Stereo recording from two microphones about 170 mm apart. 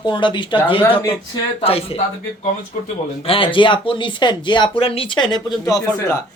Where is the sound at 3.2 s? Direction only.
30° left (ahead or behind).